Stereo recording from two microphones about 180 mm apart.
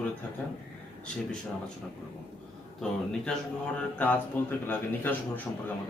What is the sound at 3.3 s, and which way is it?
A man's voice, 5° left (ahead or behind).